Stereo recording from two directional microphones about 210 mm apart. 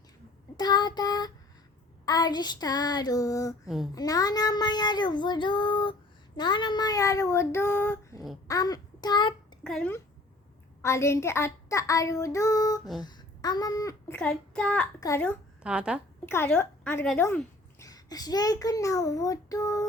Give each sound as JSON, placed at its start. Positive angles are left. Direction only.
{"t": 0.5, "sound": "child singing", "side_deg": 20}
{"t": 9.6, "sound": "speech", "side_deg": 5}
{"t": 10.8, "sound": "child singing", "side_deg": 15}
{"t": 13.0, "sound": "speech", "side_deg": 20}
{"t": 15.6, "sound": "speech", "side_deg": -5}
{"t": 16.2, "sound": "speech", "side_deg": 10}